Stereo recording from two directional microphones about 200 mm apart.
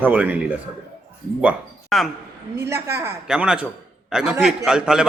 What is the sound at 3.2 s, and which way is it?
A man's voice, 5° right (ahead or behind).